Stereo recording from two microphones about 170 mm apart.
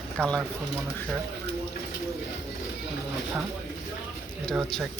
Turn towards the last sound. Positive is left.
turn(degrees=0)  # may be behind; listen again after turning